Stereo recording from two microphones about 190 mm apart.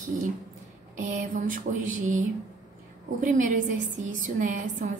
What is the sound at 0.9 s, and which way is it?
A woman's voice, 45° right (ahead or behind).